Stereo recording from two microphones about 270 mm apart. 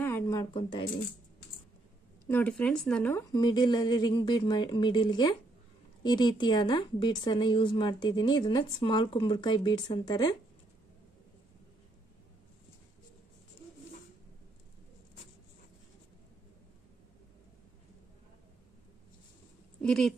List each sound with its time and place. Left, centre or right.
0.0 s a sound: centre
2.2 s a woman's voice: centre
19.8 s speech: centre